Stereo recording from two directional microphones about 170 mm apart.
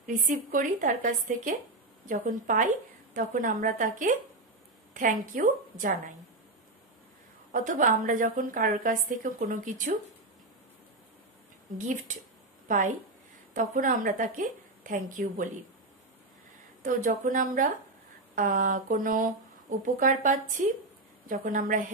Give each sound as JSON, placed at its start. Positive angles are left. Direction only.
{"t": 0.0, "sound": "a woman's voice", "side_deg": -50}
{"t": 7.5, "sound": "a woman's voice", "side_deg": -50}
{"t": 11.7, "sound": "a woman's voice", "side_deg": -50}
{"t": 16.8, "sound": "a woman's voice", "side_deg": -50}